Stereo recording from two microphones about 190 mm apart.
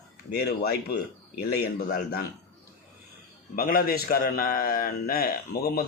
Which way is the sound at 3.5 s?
50° left (ahead or behind).